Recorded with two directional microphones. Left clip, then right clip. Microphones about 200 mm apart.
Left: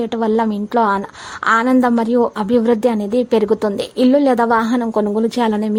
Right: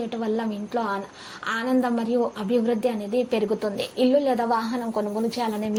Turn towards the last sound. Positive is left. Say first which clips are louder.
# left 9 dB
turn(degrees=40)  # may be behind; listen again after turning